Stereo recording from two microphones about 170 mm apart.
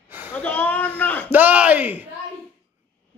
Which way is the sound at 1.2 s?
10° right (ahead or behind).